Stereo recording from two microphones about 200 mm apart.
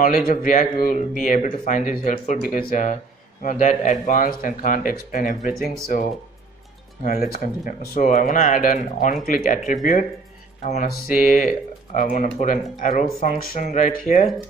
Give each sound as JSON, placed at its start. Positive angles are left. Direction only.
{"t": 0.0, "sound": "speech", "side_deg": 45}
{"t": 7.2, "sound": "speech", "side_deg": 50}
{"t": 10.6, "sound": "speech", "side_deg": 40}